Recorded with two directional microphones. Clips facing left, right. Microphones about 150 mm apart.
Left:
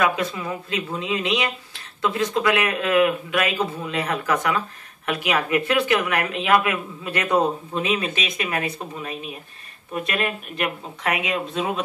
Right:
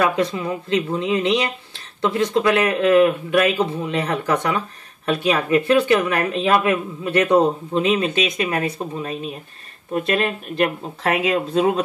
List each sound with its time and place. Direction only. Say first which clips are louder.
0.0 s speech: right 3 dB; 30° right (ahead or behind)